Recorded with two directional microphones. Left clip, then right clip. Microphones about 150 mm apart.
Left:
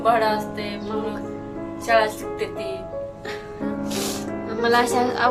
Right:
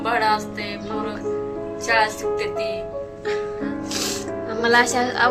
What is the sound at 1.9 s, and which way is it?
Speech, 30° left (ahead or behind).